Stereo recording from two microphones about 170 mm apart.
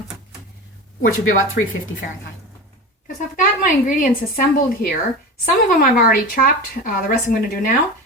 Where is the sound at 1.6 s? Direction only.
60° left (ahead or behind).